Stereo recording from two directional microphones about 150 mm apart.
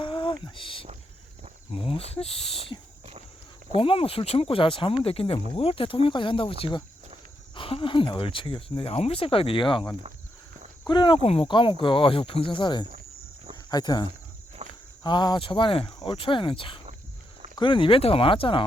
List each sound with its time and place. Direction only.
0.0 s a sound: 35° left (ahead or behind)
0.4 s speech: 35° left (ahead or behind)
14.6 s walk: 50° right (ahead or behind)
15.0 s speech: 30° left (ahead or behind)